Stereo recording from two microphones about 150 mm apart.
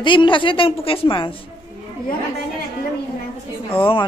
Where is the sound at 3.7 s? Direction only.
35° left (ahead or behind).